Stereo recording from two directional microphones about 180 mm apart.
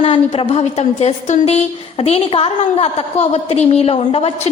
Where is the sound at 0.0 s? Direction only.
30° left (ahead or behind).